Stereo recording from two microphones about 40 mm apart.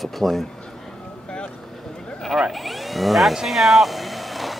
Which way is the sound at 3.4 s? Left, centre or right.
Centre.